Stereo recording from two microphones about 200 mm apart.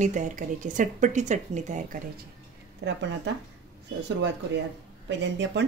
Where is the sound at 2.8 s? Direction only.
60° right (ahead or behind).